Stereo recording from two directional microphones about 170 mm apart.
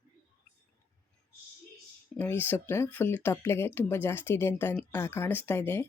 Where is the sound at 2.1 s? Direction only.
10° left (ahead or behind).